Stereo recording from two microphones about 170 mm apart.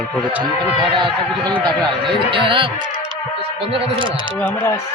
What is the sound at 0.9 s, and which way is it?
Speech, 30° right (ahead or behind).